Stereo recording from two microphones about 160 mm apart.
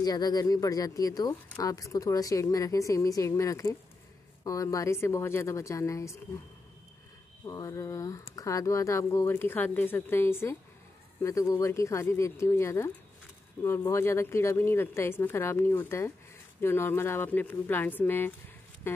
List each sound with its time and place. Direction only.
0.0 s speech: 25° left (ahead or behind)
7.4 s speech: 20° left (ahead or behind)